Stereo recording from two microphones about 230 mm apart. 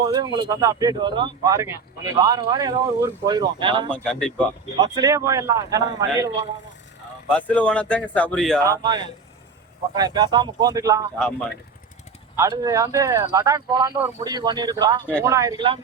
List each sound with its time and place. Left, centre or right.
0.0 s speech: centre
3.9 s speech: centre
4.8 s speech: centre
7.3 s speech: centre
8.6 s speech: centre
12.4 s speech: centre